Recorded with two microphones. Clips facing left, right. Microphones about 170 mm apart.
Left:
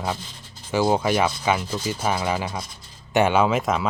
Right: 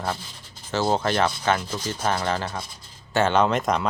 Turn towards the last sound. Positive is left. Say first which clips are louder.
# left 1 dB
turn(degrees=5)  # may be behind; listen again after turning